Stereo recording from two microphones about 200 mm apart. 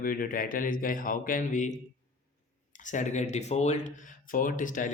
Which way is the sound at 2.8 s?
40° left (ahead or behind).